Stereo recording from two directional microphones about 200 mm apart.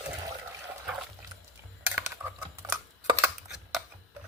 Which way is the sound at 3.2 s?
5° right (ahead or behind).